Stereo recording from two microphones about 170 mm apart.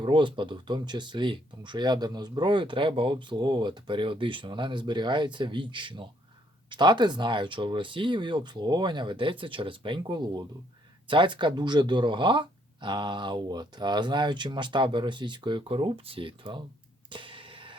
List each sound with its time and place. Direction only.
0.0 s speech: 30° right (ahead or behind)
17.1 s music: 30° right (ahead or behind)